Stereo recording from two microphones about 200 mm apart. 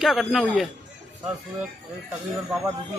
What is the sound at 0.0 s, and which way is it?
Speech, centre (ahead or behind).